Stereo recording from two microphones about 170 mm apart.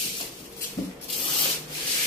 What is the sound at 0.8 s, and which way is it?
Sanding, 20° left (ahead or behind).